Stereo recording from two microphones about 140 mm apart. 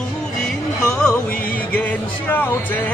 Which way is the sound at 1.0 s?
5° left (ahead or behind).